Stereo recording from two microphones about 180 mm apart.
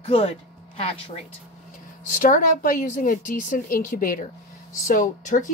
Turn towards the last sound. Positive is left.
turn(degrees=45)  # may be behind; listen again after turning